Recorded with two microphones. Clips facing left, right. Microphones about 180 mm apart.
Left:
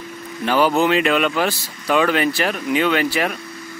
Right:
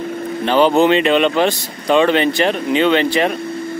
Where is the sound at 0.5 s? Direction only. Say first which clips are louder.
Right 4 dB; 25° right (ahead or behind).